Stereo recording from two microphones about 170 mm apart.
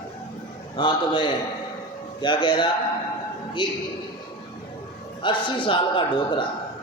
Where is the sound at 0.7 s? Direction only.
30° left (ahead or behind).